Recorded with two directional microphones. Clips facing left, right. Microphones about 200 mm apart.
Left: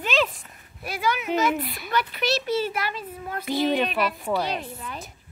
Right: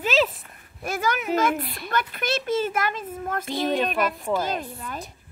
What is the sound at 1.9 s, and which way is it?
A child's voice, 50° right (ahead or behind).